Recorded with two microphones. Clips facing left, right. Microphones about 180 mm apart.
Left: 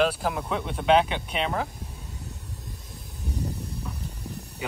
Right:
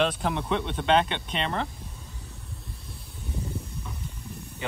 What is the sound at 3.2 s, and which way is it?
Snake, 40° left (ahead or behind).